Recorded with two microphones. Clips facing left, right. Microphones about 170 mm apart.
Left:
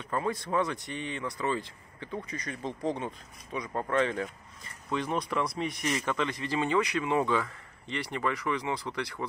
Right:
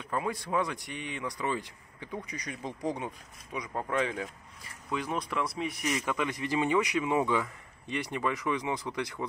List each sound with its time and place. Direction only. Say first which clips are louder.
0.1 s speech: left 1 dB; 10° right (ahead or behind)